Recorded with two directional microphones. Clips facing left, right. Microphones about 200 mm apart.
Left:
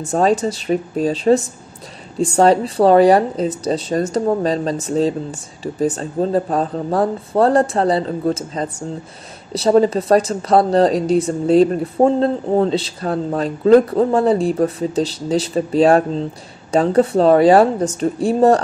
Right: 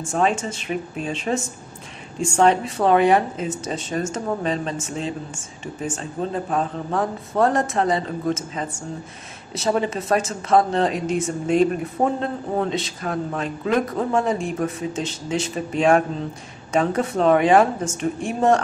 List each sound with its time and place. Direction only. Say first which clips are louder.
0.0 s speech: left 6 dB; 35° left (ahead or behind)